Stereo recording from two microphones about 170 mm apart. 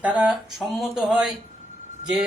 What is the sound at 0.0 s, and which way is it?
A man's voice, 5° right (ahead or behind).